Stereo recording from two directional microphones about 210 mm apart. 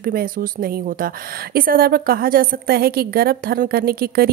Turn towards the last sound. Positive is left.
turn(degrees=-45)  # may be behind; listen again after turning